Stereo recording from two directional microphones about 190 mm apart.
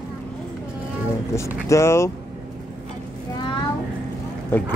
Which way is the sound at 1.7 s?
15° left (ahead or behind).